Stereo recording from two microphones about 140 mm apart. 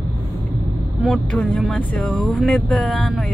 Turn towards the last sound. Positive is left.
turn(degrees=5)  # may be behind; listen again after turning